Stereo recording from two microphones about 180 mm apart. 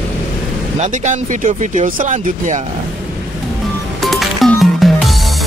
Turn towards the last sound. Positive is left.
turn(degrees=0)  # may be behind; listen again after turning